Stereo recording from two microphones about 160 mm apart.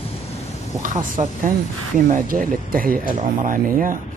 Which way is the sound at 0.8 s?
55° right (ahead or behind).